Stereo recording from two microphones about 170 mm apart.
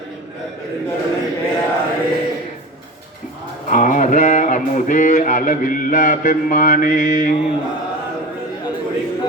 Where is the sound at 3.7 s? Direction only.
50° left (ahead or behind).